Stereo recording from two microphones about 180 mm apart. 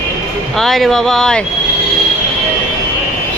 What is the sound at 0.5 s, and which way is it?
Speech, centre (ahead or behind).